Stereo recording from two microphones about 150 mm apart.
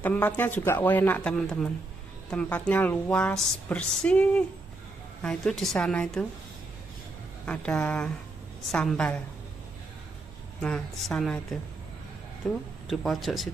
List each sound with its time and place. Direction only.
0.0 s a woman's voice: 15° left (ahead or behind)
7.4 s a woman's voice: 10° left (ahead or behind)
10.6 s a woman's voice: 5° left (ahead or behind)
12.4 s a woman's voice: 5° left (ahead or behind)